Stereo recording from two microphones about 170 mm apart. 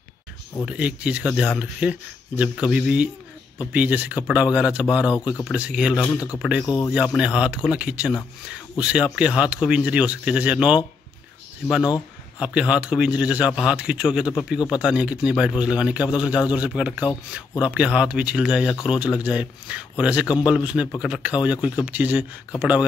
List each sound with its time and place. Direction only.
0.7 s a man's voice: 5° right (ahead or behind)
6.6 s speech: 20° left (ahead or behind)
6.9 s a man's voice: 5° right (ahead or behind)
12.4 s a man's voice: 5° right (ahead or behind)